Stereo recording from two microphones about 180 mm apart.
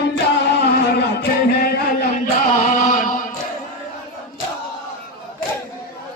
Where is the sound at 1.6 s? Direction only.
55° left (ahead or behind).